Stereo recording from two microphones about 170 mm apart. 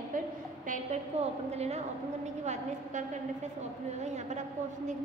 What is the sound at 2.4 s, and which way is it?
A woman's voice, 45° right (ahead or behind).